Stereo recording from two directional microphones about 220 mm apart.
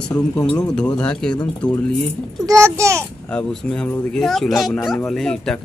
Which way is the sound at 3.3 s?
5° left (ahead or behind).